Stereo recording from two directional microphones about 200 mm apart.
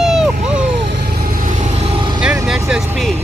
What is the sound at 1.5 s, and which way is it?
Vehicle, 30° right (ahead or behind).